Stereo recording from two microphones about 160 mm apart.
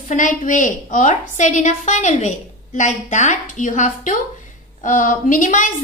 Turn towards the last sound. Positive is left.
turn(degrees=50)  # may be behind; listen again after turning